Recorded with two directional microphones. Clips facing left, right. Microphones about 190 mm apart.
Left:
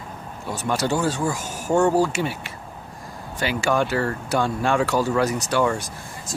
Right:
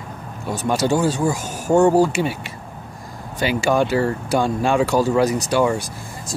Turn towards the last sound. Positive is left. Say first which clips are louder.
# right 3 dB
turn(degrees=-15)  # may be behind; listen again after turning